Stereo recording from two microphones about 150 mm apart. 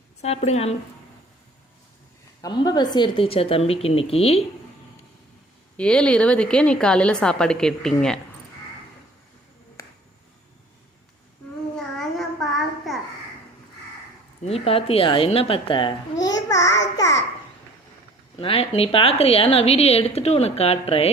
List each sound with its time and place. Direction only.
0.2 s a woman's voice: 45° left (ahead or behind)
2.4 s a woman's voice: 25° left (ahead or behind)
5.7 s a woman's voice: 5° left (ahead or behind)
9.8 s finger snapping: 20° left (ahead or behind)
11.8 s a sound: centre (ahead or behind)
14.4 s a woman's voice: 40° left (ahead or behind); by 17.2 s 20° left (ahead or behind)
18.3 s a woman's voice: 40° left (ahead or behind)